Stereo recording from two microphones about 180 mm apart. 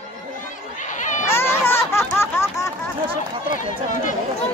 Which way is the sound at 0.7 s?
45° left (ahead or behind).